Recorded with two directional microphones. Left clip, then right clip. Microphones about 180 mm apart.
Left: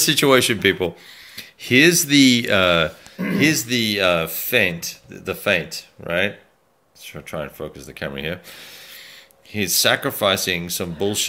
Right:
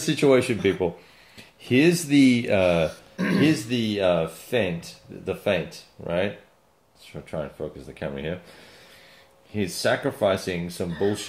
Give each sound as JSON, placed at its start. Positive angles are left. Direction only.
{"t": 0.0, "sound": "speech", "side_deg": 15}
{"t": 9.5, "sound": "speech", "side_deg": 15}